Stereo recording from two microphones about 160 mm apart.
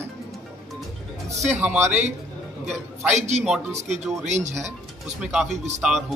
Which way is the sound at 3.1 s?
45° right (ahead or behind).